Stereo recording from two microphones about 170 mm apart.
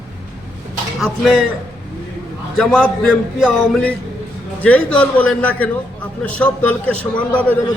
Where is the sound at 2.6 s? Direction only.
5° left (ahead or behind).